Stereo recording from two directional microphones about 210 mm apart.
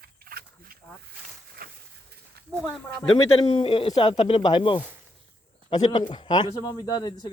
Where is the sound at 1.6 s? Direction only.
45° right (ahead or behind).